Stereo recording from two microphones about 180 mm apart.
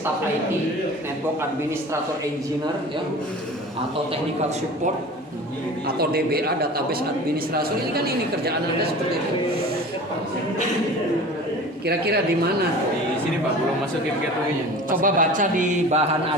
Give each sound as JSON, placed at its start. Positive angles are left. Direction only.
{"t": 6.0, "sound": "a man's voice", "side_deg": -60}
{"t": 11.9, "sound": "a man's voice", "side_deg": -60}
{"t": 14.8, "sound": "a man's voice", "side_deg": -50}